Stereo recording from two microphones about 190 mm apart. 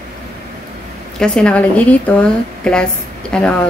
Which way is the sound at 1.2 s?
5° left (ahead or behind).